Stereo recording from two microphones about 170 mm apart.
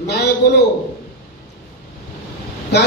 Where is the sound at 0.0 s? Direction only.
75° left (ahead or behind).